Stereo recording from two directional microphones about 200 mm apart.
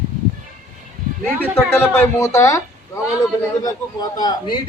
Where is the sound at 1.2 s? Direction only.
10° left (ahead or behind).